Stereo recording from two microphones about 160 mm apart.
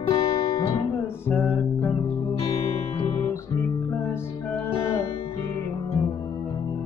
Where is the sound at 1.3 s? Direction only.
10° left (ahead or behind).